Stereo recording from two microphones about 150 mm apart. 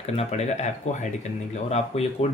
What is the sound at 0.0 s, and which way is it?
Speech, 45° left (ahead or behind).